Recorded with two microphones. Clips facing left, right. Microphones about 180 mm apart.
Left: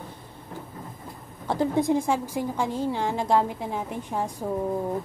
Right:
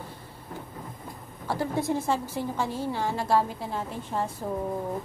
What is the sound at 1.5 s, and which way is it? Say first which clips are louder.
A woman's voice: left 5 dB; 20° left (ahead or behind).